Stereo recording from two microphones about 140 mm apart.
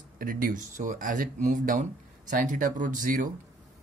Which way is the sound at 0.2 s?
90° right.